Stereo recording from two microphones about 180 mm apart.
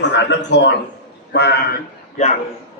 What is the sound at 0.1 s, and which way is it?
A man's voice, 75° left (ahead or behind).